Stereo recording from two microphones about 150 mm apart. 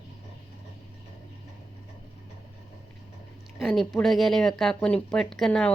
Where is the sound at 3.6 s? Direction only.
Centre (ahead or behind).